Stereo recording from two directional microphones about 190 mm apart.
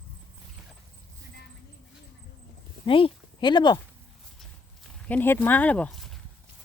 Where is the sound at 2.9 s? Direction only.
25° left (ahead or behind).